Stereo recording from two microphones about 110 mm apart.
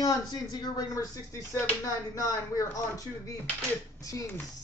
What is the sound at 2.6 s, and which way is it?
Speech, 30° left (ahead or behind).